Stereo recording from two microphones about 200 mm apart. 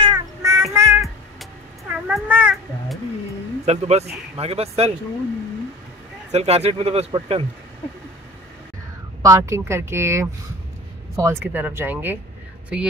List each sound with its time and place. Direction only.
0.0 s child singing: 20° right (ahead or behind)
2.0 s cat: 5° right (ahead or behind)
3.6 s speech: 30° right (ahead or behind)
6.3 s speech: 30° right (ahead or behind)
9.2 s a woman's voice: 15° right (ahead or behind)